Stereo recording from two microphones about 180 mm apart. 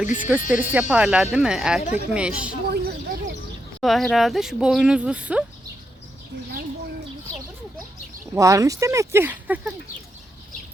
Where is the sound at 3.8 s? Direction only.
Centre (ahead or behind).